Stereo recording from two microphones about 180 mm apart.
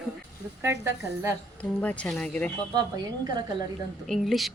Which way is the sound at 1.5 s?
5° left (ahead or behind).